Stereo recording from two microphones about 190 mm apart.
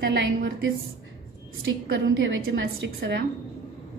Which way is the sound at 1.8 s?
85° right.